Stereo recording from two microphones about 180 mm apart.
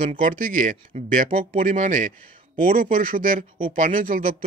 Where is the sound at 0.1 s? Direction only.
45° right (ahead or behind).